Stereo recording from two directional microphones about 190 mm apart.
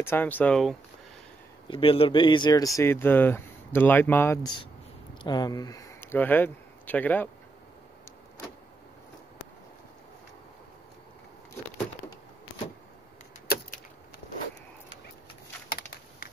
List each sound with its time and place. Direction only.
0.0 s speech: 10° left (ahead or behind)
1.7 s speech: 30° left (ahead or behind); by 7.2 s 10° left (ahead or behind)
15.7 s a sound: 50° left (ahead or behind)